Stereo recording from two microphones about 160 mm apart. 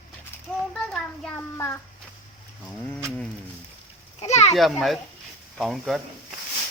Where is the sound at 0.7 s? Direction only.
5° left (ahead or behind).